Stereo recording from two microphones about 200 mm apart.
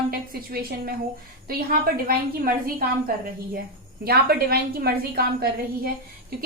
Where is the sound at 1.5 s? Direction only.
50° right (ahead or behind).